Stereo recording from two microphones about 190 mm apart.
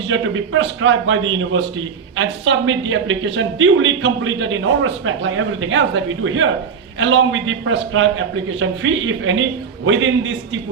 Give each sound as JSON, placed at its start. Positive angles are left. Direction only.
{"t": 0.1, "sound": "a woman's voice", "side_deg": -90}